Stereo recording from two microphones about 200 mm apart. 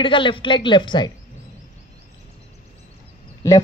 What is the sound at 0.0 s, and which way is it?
A woman's voice, 25° left (ahead or behind).